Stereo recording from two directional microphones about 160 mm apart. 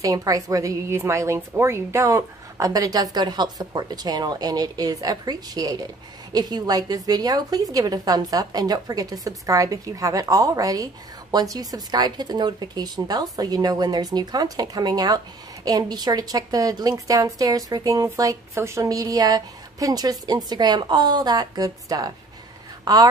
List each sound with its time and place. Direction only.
0.0 s a woman's voice: 20° right (ahead or behind)